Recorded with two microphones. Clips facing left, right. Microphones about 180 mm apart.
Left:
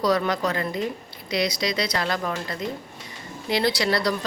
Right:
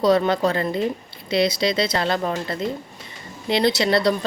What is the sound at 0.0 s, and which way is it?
Speech, 25° right (ahead or behind).